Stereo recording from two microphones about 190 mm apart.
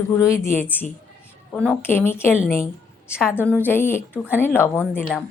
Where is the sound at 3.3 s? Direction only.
10° left (ahead or behind).